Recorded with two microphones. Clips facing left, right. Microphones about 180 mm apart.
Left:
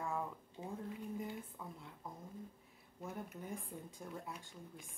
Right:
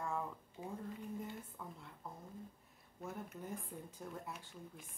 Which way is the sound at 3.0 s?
Centre (ahead or behind).